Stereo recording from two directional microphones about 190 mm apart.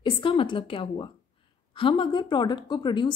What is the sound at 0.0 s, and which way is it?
A woman's voice, 25° left (ahead or behind).